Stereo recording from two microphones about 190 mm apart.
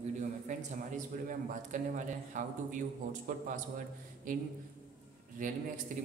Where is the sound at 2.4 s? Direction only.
40° right (ahead or behind).